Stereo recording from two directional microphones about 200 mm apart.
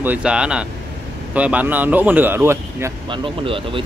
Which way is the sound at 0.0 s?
5° right (ahead or behind).